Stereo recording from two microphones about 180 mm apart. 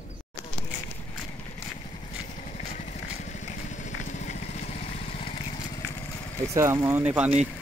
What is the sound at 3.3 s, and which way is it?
Vehicle, 40° left (ahead or behind).